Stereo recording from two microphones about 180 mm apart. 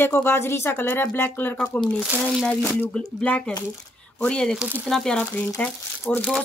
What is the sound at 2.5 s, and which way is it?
Speech, 10° left (ahead or behind).